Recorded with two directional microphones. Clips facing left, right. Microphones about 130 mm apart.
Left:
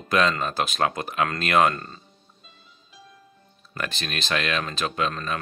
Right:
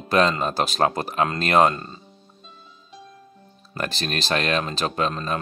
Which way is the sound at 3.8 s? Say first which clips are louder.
Right 4 dB; 35° right (ahead or behind).